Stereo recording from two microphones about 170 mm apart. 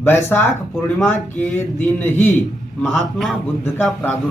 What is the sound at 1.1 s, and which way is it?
Speech, 45° left (ahead or behind).